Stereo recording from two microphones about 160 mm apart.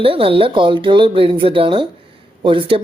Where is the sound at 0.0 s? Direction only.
35° right (ahead or behind).